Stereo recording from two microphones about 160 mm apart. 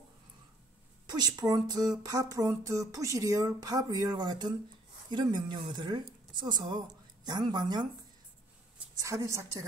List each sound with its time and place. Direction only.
1.0 s a woman's voice: 25° right (ahead or behind)